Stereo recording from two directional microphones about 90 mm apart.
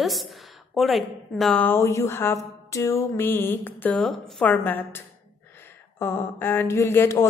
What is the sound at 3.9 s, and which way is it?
Speech, 10° left (ahead or behind).